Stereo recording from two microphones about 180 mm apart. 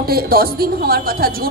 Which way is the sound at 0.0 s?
55° right (ahead or behind).